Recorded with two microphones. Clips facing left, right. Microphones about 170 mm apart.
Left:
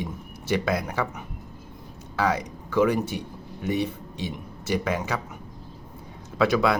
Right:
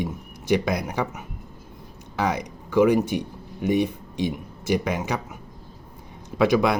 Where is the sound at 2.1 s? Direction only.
15° right (ahead or behind).